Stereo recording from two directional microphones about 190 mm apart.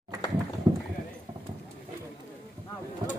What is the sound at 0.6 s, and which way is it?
Clip-clop, 15° right (ahead or behind).